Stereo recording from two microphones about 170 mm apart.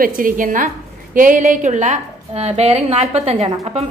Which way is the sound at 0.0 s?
55° right (ahead or behind).